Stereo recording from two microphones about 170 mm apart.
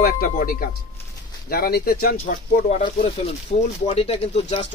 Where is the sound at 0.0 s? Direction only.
60° left (ahead or behind).